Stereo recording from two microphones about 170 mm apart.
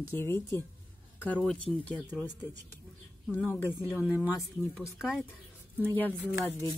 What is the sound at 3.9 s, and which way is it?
Speech, 5° right (ahead or behind).